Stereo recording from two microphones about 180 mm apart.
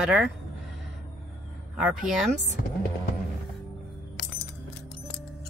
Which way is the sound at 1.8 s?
5° right (ahead or behind).